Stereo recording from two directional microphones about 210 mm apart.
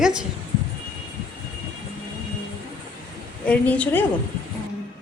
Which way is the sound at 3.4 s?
5° left (ahead or behind).